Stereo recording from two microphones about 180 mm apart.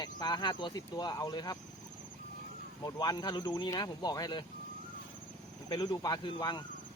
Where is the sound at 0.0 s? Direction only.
25° left (ahead or behind).